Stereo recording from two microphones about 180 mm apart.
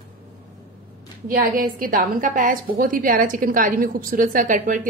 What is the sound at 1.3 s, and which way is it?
A woman's voice, 50° right (ahead or behind).